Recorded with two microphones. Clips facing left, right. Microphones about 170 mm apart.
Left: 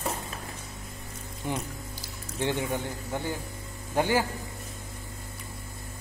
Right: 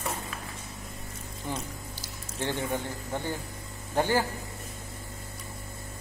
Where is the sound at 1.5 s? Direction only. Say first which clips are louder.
Left 3 dB; 15° left (ahead or behind).